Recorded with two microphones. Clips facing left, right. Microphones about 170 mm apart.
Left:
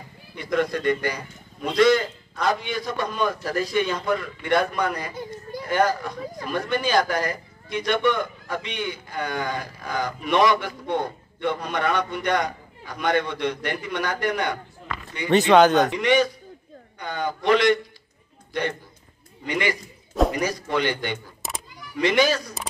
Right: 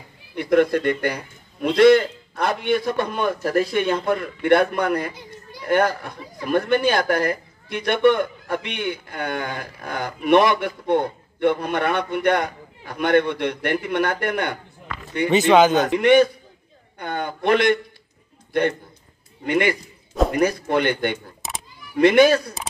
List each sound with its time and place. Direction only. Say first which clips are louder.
0.4 s a man's voice: right 6 dB; 60° right (ahead or behind)
15.2 s speech: right 1 dB; centre (ahead or behind)
15.9 s a man's voice: right 6 dB; 55° right (ahead or behind)